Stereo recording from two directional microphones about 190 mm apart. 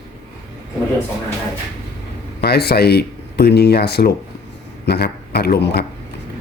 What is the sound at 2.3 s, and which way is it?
A man's voice, 55° left (ahead or behind).